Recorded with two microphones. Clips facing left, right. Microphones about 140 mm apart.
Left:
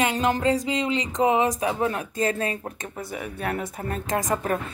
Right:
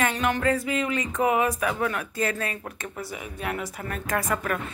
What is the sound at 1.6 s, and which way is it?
A woman's voice, 25° left (ahead or behind).